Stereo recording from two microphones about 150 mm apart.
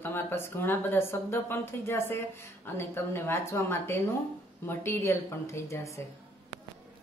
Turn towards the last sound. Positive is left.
turn(degrees=20)  # may be behind; listen again after turning